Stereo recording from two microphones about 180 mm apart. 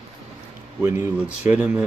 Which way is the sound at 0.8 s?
10° right (ahead or behind).